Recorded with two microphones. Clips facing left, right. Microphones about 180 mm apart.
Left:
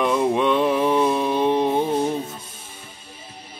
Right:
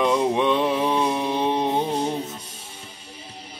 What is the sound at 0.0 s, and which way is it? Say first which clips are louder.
Mantra: left 1 dB; 20° right (ahead or behind).